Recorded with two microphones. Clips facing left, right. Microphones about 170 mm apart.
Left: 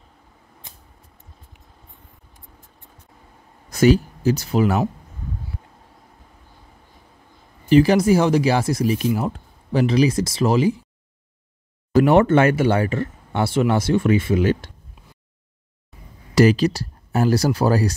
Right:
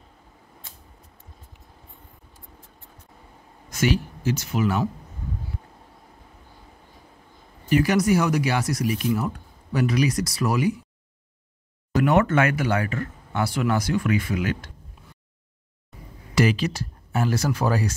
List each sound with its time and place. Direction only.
4.5 s speech: 35° left (ahead or behind)
7.7 s speech: 30° left (ahead or behind)
11.9 s speech: 30° left (ahead or behind)
16.3 s speech: 40° left (ahead or behind)